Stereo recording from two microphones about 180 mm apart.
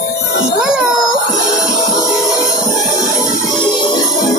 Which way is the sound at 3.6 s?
25° left (ahead or behind).